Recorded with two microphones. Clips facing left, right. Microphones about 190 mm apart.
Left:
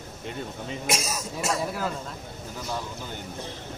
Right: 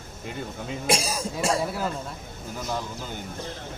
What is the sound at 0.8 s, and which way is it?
Speech, 30° right (ahead or behind).